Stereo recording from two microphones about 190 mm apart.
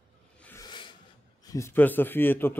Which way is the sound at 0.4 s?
10° left (ahead or behind).